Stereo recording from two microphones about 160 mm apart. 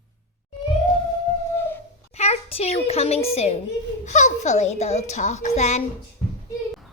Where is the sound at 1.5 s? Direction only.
15° left (ahead or behind).